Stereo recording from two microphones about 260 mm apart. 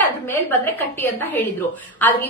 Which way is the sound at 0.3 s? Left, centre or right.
Centre.